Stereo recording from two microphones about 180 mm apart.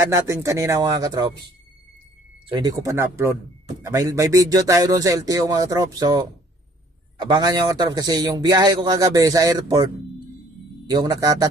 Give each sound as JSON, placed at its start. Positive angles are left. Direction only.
{"t": 0.1, "sound": "a man's voice", "side_deg": -15}
{"t": 2.5, "sound": "a man's voice", "side_deg": -20}
{"t": 10.9, "sound": "a man's voice", "side_deg": -20}